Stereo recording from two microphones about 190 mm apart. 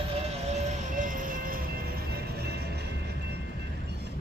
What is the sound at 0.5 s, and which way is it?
Music, 40° right (ahead or behind).